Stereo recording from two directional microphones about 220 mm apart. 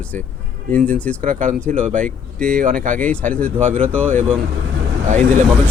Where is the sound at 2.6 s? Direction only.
40° right (ahead or behind).